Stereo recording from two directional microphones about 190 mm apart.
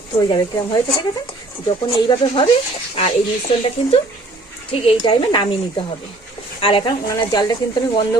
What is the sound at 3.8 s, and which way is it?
Speech, 30° left (ahead or behind).